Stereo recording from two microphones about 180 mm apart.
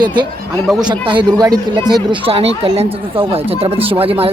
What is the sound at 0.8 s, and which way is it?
Speech, 25° right (ahead or behind).